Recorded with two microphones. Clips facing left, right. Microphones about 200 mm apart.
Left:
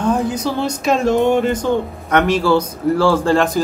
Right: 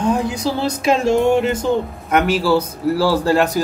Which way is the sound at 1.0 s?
10° right (ahead or behind).